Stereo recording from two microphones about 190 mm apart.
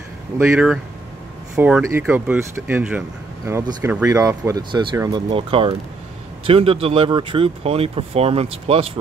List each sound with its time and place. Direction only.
0.4 s speech: 5° right (ahead or behind); by 8.9 s 30° right (ahead or behind)